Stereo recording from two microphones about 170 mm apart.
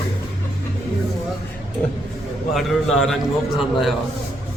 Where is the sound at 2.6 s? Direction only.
Centre (ahead or behind).